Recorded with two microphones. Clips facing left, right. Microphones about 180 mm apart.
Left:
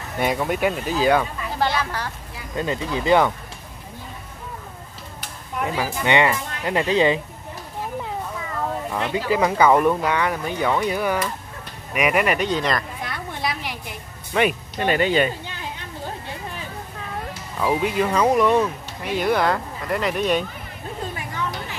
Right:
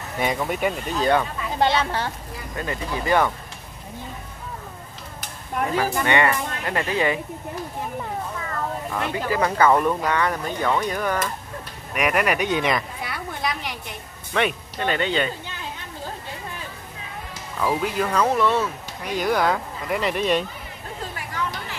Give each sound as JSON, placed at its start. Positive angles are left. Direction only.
{"t": 0.2, "sound": "speech", "side_deg": 0}
{"t": 1.6, "sound": "speech", "side_deg": -25}
{"t": 2.5, "sound": "speech", "side_deg": 20}
{"t": 6.0, "sound": "speech", "side_deg": 15}
{"t": 8.5, "sound": "speech", "side_deg": 15}
{"t": 12.4, "sound": "a sound", "side_deg": -10}
{"t": 14.3, "sound": "speech", "side_deg": 5}
{"t": 17.6, "sound": "speech", "side_deg": 5}